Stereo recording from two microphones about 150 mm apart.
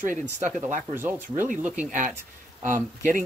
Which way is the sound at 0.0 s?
55° right (ahead or behind).